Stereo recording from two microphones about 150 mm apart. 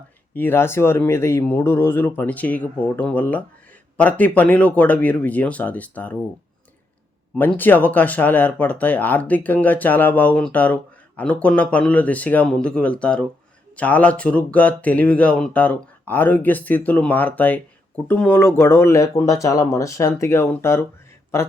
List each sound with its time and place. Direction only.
0.3 s speech: 15° left (ahead or behind)
7.3 s speech: 10° left (ahead or behind)